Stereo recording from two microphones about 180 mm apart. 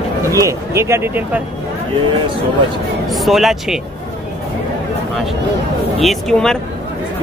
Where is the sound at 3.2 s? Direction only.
Centre (ahead or behind).